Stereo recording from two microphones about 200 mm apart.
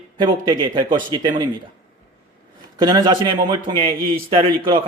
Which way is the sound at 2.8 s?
20° right (ahead or behind).